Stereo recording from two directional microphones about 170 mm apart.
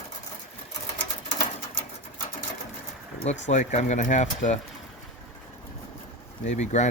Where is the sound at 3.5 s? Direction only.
45° left (ahead or behind).